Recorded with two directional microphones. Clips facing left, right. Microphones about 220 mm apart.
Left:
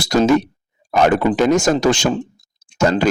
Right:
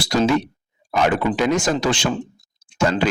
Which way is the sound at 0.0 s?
45° left (ahead or behind).